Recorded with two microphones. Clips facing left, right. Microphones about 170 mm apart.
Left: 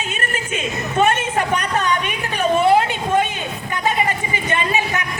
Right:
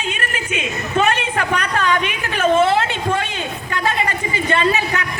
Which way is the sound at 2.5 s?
15° left (ahead or behind).